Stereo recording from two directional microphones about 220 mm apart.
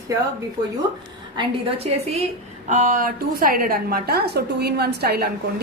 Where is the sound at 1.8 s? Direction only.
30° right (ahead or behind); by 5.3 s 45° right (ahead or behind).